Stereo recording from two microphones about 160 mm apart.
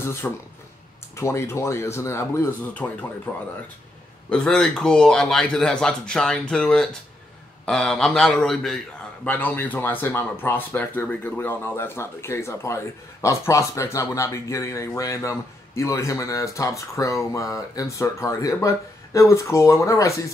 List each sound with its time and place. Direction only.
0.0 s a man's voice: 15° left (ahead or behind)